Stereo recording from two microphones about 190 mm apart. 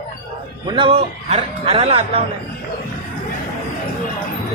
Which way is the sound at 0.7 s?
30° right (ahead or behind).